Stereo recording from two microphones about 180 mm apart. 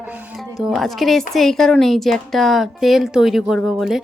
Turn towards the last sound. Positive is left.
turn(degrees=0)  # may be behind; listen again after turning